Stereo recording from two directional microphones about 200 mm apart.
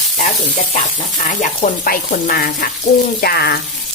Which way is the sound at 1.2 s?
40° left (ahead or behind).